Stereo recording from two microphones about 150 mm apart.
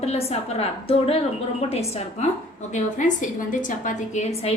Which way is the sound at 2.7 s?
55° left (ahead or behind).